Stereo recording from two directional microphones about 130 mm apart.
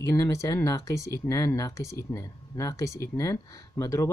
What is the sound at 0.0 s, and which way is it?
Speech, 25° left (ahead or behind).